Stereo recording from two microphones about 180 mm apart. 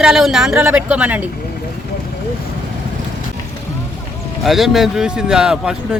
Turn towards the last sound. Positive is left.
turn(degrees=-5)  # may be behind; listen again after turning